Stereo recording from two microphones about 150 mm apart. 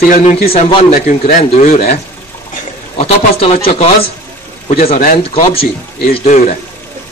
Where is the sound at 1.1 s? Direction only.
55° left (ahead or behind).